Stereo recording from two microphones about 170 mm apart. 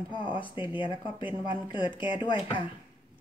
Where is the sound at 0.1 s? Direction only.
30° left (ahead or behind).